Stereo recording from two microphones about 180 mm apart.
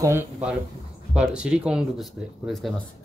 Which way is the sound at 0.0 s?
10° right (ahead or behind).